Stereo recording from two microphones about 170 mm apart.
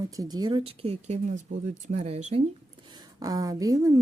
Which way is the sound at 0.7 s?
40° right (ahead or behind).